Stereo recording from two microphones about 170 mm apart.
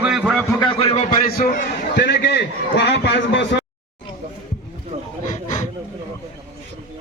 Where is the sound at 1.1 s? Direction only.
60° left (ahead or behind); by 3.6 s 90° left.